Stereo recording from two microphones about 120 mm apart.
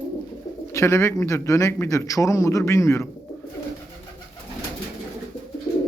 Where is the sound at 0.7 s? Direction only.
25° left (ahead or behind).